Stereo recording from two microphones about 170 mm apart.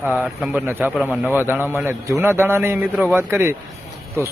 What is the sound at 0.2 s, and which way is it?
A man's voice, 10° right (ahead or behind).